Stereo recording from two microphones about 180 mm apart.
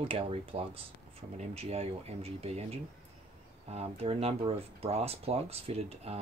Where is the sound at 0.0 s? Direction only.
30° right (ahead or behind).